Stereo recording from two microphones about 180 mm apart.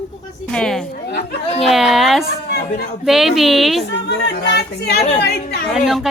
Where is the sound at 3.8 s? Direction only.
75° left (ahead or behind).